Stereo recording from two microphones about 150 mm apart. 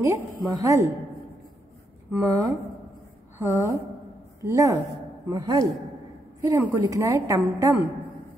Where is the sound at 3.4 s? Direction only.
20° right (ahead or behind).